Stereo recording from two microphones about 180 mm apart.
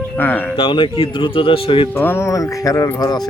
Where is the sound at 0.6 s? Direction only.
30° left (ahead or behind).